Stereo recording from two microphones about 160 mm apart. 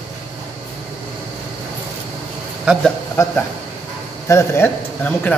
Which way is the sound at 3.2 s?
15° left (ahead or behind).